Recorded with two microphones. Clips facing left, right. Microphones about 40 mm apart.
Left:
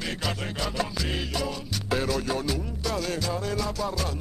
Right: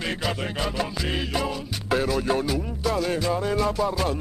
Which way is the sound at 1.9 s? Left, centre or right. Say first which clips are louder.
Right 4 dB; centre.